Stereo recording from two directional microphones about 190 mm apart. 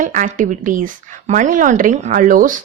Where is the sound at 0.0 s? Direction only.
45° right (ahead or behind).